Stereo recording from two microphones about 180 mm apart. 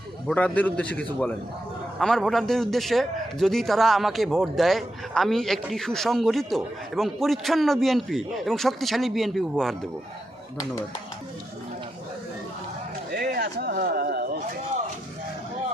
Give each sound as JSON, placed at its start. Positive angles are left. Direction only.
{"t": 0.3, "sound": "a man's voice", "side_deg": 10}
{"t": 13.1, "sound": "speech", "side_deg": -60}